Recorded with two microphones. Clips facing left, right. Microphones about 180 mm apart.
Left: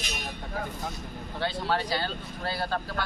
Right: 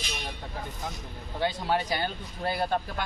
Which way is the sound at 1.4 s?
15° right (ahead or behind).